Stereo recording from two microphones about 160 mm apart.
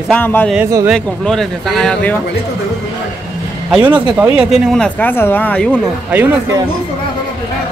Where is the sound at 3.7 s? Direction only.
10° right (ahead or behind); by 5.8 s 10° left (ahead or behind).